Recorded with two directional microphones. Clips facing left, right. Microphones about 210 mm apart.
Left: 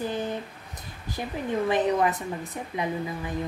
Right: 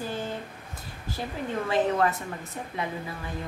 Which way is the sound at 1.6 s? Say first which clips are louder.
Left 1 dB; 20° left (ahead or behind).